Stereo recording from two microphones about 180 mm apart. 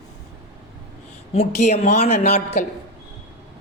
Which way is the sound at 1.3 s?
40° left (ahead or behind).